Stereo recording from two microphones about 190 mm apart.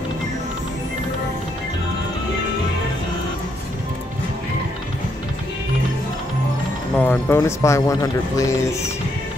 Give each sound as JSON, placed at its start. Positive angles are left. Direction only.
{"t": 7.0, "sound": "speech", "side_deg": 10}